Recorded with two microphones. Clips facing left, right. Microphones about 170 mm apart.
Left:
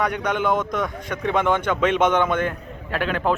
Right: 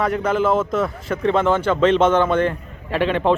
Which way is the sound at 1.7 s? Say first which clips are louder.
Right 5 dB; 10° left (ahead or behind).